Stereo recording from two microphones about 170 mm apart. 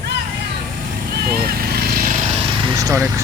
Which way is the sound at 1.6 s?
60° right (ahead or behind).